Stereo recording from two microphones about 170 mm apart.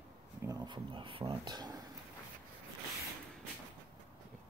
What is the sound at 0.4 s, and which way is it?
Speech, 20° right (ahead or behind).